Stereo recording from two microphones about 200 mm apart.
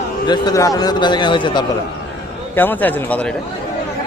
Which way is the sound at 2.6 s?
10° left (ahead or behind).